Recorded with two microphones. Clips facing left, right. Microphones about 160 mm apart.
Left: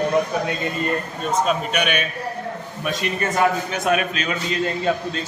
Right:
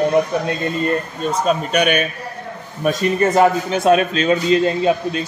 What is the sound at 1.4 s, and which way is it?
A man's voice, 40° right (ahead or behind).